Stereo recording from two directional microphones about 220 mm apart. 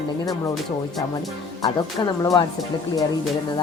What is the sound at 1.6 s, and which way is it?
Speech, 15° left (ahead or behind).